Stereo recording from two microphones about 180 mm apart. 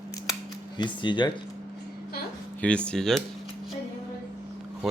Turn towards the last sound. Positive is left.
turn(degrees=5)  # may be behind; listen again after turning